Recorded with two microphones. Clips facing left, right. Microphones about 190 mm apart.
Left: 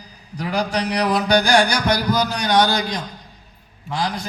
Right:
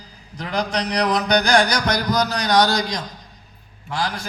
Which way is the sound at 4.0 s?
20° left (ahead or behind).